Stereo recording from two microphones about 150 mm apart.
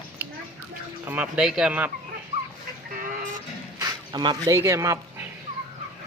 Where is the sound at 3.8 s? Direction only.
25° right (ahead or behind).